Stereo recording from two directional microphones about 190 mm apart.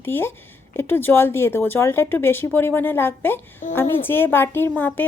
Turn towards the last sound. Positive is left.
turn(degrees=10)  # may be behind; listen again after turning